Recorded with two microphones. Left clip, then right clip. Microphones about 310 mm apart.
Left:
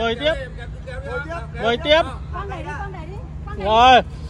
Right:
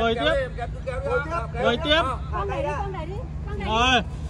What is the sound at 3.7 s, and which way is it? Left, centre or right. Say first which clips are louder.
Speech: left 9 dB; left.